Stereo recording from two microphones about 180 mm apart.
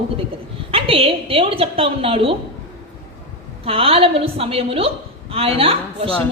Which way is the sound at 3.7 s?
30° right (ahead or behind).